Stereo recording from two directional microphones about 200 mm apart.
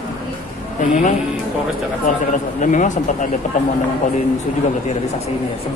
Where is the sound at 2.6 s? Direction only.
40° left (ahead or behind).